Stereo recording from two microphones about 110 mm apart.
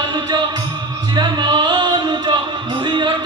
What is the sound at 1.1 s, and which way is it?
Music, 40° right (ahead or behind).